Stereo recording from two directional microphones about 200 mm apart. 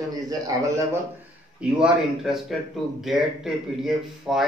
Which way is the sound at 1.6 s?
5° right (ahead or behind).